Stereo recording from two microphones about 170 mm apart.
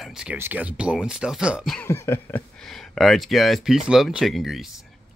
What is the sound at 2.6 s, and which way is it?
Speech, centre (ahead or behind).